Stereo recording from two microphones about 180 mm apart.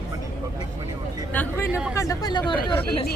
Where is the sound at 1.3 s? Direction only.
10° left (ahead or behind).